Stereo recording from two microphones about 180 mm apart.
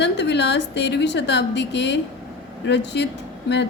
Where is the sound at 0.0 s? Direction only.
70° left (ahead or behind).